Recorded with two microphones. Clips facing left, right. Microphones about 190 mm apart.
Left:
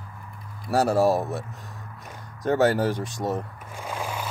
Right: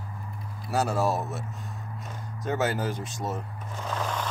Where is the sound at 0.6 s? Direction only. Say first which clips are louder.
Left 5 dB; 60° left (ahead or behind).